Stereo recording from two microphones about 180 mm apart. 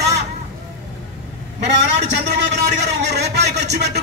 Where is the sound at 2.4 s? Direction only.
70° right (ahead or behind).